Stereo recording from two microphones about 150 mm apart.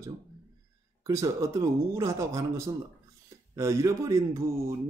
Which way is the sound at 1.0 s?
20° right (ahead or behind).